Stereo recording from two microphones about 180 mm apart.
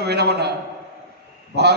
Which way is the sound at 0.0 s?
65° right (ahead or behind).